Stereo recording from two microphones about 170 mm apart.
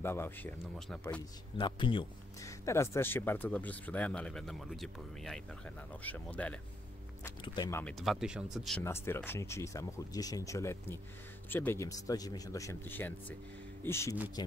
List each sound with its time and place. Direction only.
0.0 s speech: 15° left (ahead or behind)
1.6 s a man's voice: 30° left (ahead or behind)
2.4 s speech: 15° left (ahead or behind)
7.4 s a man's voice: 25° left (ahead or behind)
8.0 s speech: centre (ahead or behind)
8.8 s speech: 15° left (ahead or behind)